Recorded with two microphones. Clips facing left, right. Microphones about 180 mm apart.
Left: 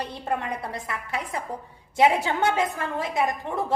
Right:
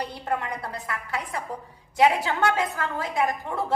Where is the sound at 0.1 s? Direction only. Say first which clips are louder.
Left 1 dB; 20° left (ahead or behind).